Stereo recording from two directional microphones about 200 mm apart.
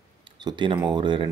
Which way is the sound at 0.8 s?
25° right (ahead or behind).